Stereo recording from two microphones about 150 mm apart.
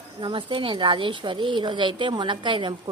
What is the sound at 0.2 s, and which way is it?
A woman's voice, 30° right (ahead or behind).